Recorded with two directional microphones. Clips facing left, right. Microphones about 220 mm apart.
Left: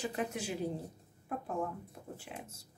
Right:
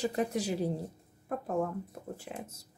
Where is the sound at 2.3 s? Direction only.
40° right (ahead or behind).